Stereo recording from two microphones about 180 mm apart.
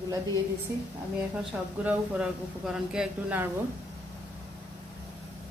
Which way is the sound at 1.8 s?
5° right (ahead or behind).